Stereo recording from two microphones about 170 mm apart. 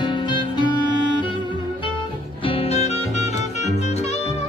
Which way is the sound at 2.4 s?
35° left (ahead or behind).